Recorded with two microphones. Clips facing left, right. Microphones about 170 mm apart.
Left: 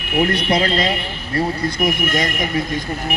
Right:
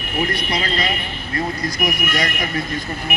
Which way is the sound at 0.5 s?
45° left (ahead or behind).